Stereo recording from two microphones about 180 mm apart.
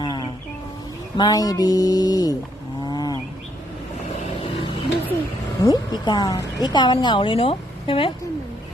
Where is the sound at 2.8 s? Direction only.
20° left (ahead or behind).